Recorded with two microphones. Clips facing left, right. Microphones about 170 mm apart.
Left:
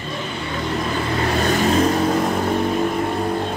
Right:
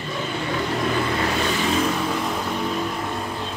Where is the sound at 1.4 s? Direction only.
45° left (ahead or behind).